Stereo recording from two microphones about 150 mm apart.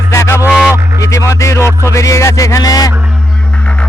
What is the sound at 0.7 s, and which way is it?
Music, 20° left (ahead or behind).